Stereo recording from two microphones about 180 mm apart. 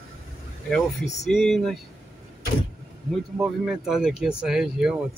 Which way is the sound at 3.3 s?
Centre (ahead or behind).